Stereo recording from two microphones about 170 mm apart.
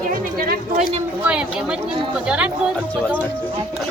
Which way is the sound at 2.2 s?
5° right (ahead or behind).